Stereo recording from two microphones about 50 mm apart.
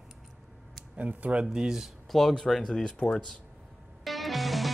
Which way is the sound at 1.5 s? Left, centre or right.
Centre.